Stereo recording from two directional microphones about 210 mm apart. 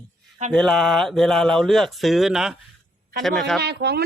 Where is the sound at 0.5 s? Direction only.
Centre (ahead or behind).